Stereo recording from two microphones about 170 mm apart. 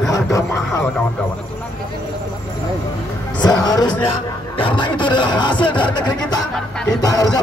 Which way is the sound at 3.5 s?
20° left (ahead or behind).